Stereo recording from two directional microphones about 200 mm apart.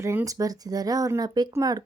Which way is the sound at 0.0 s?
15° right (ahead or behind).